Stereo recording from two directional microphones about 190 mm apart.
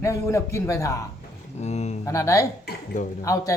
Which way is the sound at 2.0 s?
15° left (ahead or behind).